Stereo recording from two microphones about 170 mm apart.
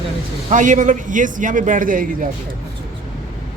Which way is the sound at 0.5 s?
50° right (ahead or behind).